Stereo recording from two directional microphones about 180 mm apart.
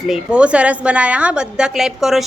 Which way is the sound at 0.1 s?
5° right (ahead or behind).